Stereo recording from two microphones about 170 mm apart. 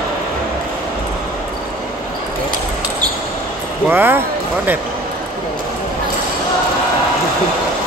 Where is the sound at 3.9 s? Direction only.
10° right (ahead or behind).